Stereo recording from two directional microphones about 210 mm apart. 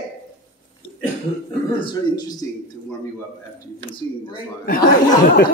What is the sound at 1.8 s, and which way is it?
Speech, 20° left (ahead or behind).